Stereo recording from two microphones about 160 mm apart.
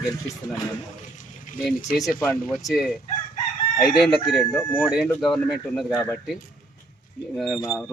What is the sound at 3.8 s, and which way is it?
Speech, 25° left (ahead or behind).